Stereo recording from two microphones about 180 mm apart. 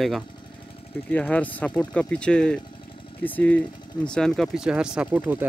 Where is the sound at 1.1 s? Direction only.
10° left (ahead or behind).